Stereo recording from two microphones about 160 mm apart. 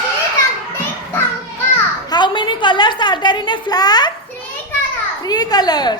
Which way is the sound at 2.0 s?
30° left (ahead or behind).